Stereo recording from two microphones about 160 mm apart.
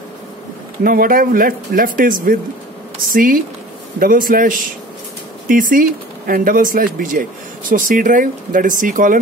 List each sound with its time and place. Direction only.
0.8 s speech: 65° right (ahead or behind)